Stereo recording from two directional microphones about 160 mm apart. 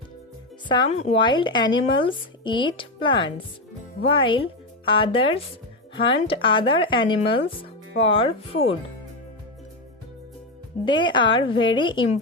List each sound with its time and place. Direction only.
0.9 s a woman's voice: 45° left (ahead or behind)
1.2 s speech: 30° left (ahead or behind)
10.8 s speech: 30° left (ahead or behind)